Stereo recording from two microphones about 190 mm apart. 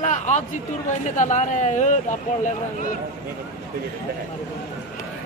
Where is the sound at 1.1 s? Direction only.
40° left (ahead or behind).